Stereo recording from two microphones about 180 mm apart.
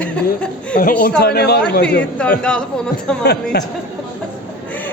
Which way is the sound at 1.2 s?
60° left (ahead or behind).